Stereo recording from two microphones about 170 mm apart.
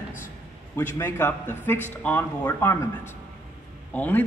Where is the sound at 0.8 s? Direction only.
15° left (ahead or behind).